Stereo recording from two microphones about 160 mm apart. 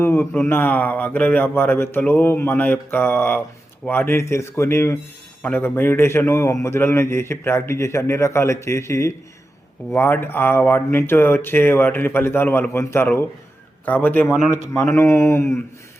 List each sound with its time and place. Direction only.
0.0 s a man's voice: 15° left (ahead or behind)